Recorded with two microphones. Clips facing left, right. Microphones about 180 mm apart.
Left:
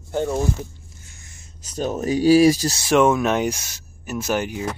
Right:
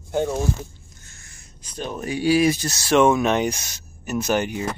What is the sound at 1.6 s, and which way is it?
Speech, 40° left (ahead or behind).